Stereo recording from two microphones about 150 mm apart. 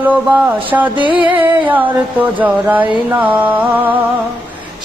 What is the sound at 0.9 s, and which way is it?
Music, 35° right (ahead or behind).